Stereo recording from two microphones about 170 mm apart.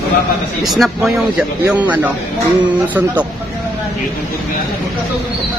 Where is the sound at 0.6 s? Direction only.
Centre (ahead or behind).